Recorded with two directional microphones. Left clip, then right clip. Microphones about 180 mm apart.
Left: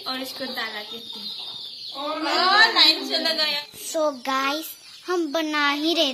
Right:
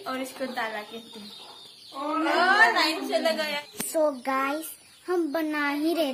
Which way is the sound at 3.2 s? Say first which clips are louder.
Left 3 dB; 20° right (ahead or behind).